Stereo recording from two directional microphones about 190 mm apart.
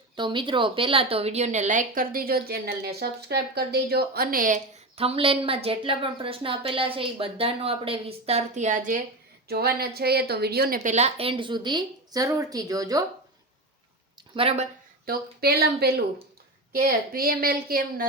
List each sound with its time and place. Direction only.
0.2 s speech: 25° right (ahead or behind); by 4.6 s 45° right (ahead or behind)
4.9 s speech: 30° right (ahead or behind)
9.5 s speech: 55° right (ahead or behind); by 13.1 s 20° right (ahead or behind)
14.3 s speech: 35° right (ahead or behind)
15.0 s speech: 50° right (ahead or behind)